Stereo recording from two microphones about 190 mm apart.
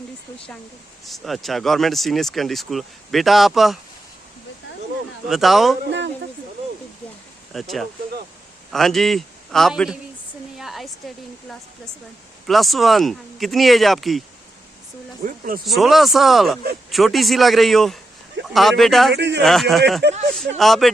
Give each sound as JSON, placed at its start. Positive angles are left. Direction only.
{"t": 1.0, "sound": "speech", "side_deg": 0}
{"t": 5.3, "sound": "speech", "side_deg": 0}
{"t": 7.5, "sound": "a man's voice", "side_deg": 0}
{"t": 10.6, "sound": "a sound", "side_deg": 0}
{"t": 12.5, "sound": "speech", "side_deg": 0}
{"t": 15.2, "sound": "speech", "side_deg": -50}
{"t": 15.6, "sound": "speech", "side_deg": 0}
{"t": 19.1, "sound": "speech", "side_deg": -65}
{"t": 19.4, "sound": "speech", "side_deg": 0}
{"t": 20.0, "sound": "speech", "side_deg": -60}
{"t": 20.6, "sound": "speech", "side_deg": 0}